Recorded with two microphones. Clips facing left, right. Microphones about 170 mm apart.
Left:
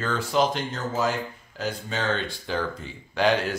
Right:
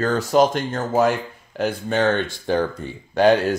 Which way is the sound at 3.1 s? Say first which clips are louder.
Right 7 dB; 45° right (ahead or behind).